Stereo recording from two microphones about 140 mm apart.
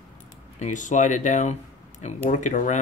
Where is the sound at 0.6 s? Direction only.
60° left (ahead or behind).